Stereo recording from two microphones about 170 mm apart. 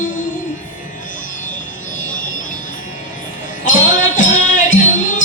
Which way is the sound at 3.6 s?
50° left (ahead or behind).